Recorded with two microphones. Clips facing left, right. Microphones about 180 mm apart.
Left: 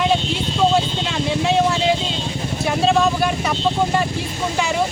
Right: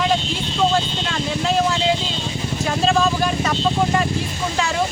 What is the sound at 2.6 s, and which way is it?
Vehicle, 5° left (ahead or behind).